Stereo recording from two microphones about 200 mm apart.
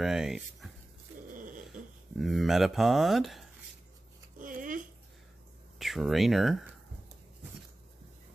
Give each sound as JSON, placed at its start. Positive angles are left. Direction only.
{"t": 0.0, "sound": "speech", "side_deg": -5}
{"t": 1.3, "sound": "a sound", "side_deg": -40}
{"t": 2.1, "sound": "speech", "side_deg": 0}
{"t": 4.4, "sound": "dog", "side_deg": -40}
{"t": 5.8, "sound": "speech", "side_deg": 0}